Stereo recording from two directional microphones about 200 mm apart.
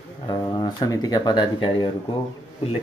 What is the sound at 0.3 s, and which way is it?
Speech, 20° left (ahead or behind).